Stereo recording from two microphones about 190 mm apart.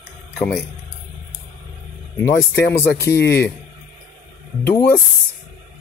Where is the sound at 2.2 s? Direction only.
15° left (ahead or behind).